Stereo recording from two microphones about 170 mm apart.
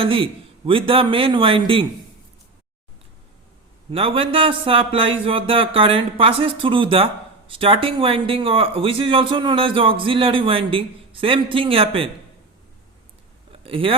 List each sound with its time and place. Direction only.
0.0 s speech: 30° right (ahead or behind)
3.9 s speech: 35° right (ahead or behind)
13.5 s a sound: 30° right (ahead or behind)